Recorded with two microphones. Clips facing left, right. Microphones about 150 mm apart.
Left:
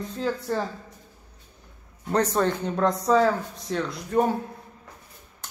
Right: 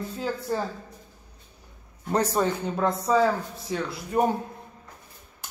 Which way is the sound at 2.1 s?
10° right (ahead or behind).